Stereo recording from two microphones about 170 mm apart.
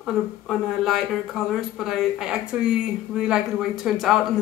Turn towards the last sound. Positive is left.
turn(degrees=0)  # may be behind; listen again after turning